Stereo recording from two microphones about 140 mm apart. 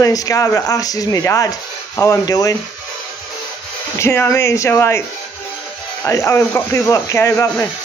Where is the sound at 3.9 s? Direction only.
15° left (ahead or behind).